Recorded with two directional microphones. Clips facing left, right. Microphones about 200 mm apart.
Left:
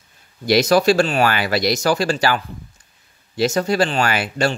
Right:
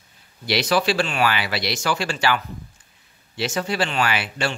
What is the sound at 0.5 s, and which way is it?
Speech, 45° left (ahead or behind).